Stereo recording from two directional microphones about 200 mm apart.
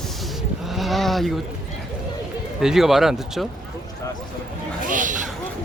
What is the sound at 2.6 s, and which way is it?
Speech, centre (ahead or behind).